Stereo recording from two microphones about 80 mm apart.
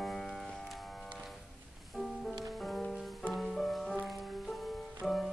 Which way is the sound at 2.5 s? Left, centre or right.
Centre.